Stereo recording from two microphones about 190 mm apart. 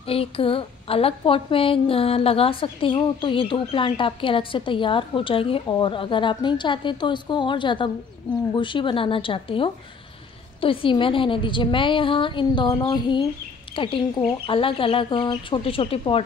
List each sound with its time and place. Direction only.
0.0 s speech: 30° left (ahead or behind)